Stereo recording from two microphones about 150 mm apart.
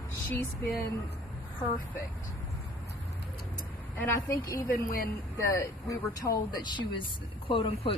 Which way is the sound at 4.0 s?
20° left (ahead or behind).